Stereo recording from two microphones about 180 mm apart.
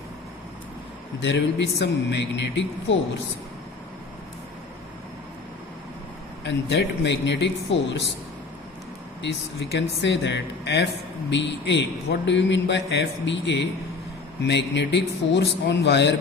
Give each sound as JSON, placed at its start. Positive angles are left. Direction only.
{"t": 1.2, "sound": "a man's voice", "side_deg": 75}
{"t": 6.4, "sound": "a man's voice", "side_deg": 75}
{"t": 9.2, "sound": "a man's voice", "side_deg": 75}